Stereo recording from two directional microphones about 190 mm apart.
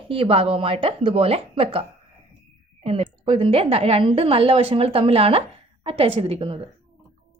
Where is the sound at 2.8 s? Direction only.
30° right (ahead or behind).